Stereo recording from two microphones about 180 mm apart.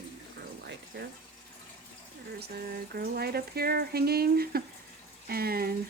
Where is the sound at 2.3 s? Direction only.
60° right (ahead or behind).